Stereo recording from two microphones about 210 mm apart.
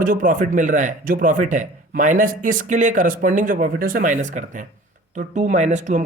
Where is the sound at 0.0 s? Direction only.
40° right (ahead or behind).